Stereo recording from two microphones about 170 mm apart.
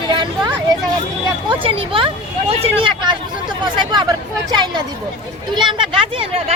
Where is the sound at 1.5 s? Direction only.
30° right (ahead or behind).